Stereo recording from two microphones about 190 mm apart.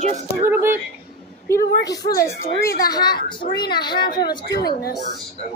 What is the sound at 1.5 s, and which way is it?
Speech, 55° left (ahead or behind).